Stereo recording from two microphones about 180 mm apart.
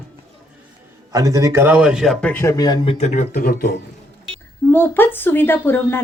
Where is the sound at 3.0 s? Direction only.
40° left (ahead or behind).